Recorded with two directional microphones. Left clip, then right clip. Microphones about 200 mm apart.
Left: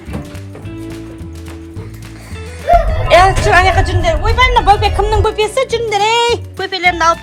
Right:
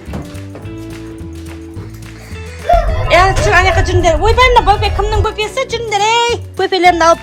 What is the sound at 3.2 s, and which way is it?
Speech, 10° right (ahead or behind).